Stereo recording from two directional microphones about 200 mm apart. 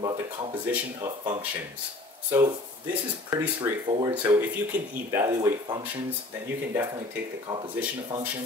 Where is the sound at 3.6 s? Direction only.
20° right (ahead or behind).